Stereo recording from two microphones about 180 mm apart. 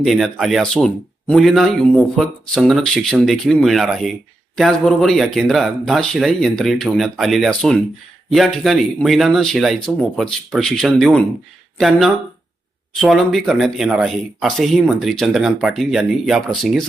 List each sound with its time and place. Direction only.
0.0 s speech: centre (ahead or behind)